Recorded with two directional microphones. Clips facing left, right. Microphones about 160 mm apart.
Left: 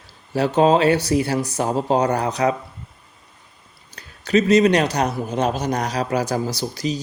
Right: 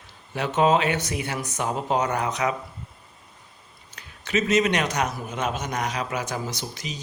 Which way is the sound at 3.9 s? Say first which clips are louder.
Left 8 dB; 35° left (ahead or behind).